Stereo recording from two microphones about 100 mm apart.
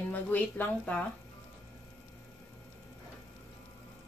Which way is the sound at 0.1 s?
15° left (ahead or behind).